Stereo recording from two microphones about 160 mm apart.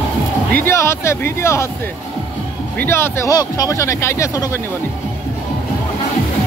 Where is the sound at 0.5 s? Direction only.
15° left (ahead or behind).